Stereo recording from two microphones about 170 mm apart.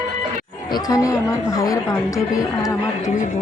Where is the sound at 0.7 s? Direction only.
20° left (ahead or behind).